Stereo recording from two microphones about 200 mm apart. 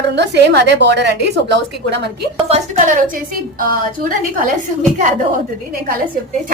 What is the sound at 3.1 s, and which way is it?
A woman's voice, 45° right (ahead or behind).